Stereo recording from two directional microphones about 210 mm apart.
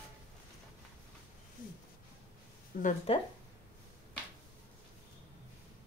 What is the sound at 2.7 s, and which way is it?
Speech, 40° left (ahead or behind).